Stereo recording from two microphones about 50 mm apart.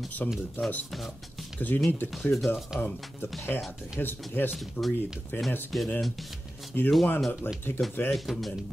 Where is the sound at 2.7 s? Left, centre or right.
Centre.